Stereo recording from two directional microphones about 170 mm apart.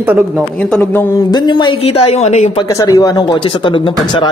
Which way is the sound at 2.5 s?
20° left (ahead or behind).